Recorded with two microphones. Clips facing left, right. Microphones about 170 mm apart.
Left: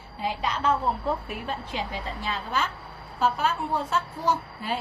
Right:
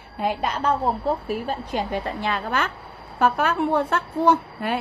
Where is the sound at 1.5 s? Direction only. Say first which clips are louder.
Right 2 dB; 45° right (ahead or behind).